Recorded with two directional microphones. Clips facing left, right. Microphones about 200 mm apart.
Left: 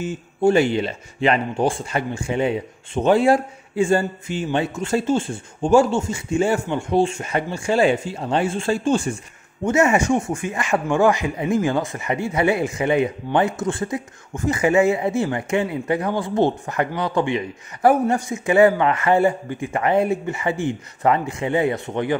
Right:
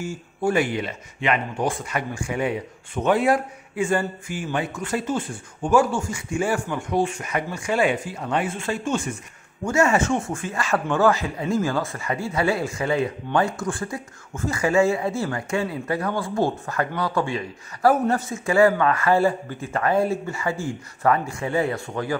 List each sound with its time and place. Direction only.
0.0 s speech: 25° left (ahead or behind)
9.7 s speech: 20° left (ahead or behind)